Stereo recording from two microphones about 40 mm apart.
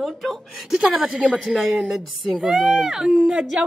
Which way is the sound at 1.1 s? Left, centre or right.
Right.